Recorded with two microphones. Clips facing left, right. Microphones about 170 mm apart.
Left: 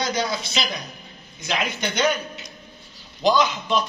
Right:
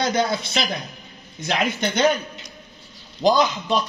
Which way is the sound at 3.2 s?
45° right (ahead or behind).